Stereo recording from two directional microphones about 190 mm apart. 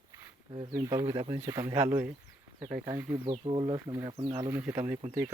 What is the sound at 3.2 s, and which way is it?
Speech, 25° right (ahead or behind).